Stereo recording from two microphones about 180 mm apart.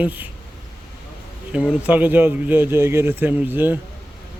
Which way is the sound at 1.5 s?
5° right (ahead or behind).